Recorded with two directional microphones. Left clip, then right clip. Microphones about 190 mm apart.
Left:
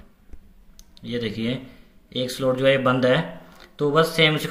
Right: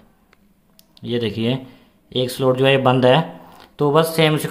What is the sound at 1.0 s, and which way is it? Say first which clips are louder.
Speech: right 6 dB; 35° right (ahead or behind).